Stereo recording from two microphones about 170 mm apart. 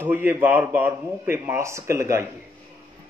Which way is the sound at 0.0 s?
10° right (ahead or behind).